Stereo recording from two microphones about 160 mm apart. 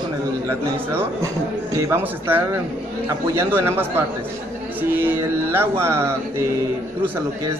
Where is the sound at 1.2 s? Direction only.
20° right (ahead or behind).